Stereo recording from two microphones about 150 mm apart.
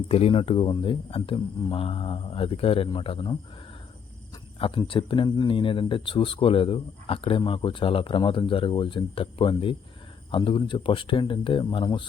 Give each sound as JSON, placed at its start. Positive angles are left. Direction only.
{"t": 0.1, "sound": "speech", "side_deg": 40}
{"t": 4.6, "sound": "speech", "side_deg": 35}